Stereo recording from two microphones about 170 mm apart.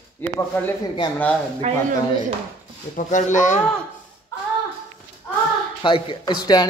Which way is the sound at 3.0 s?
45° left (ahead or behind).